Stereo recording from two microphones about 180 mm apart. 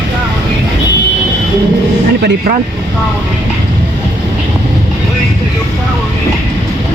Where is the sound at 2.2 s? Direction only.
60° right (ahead or behind).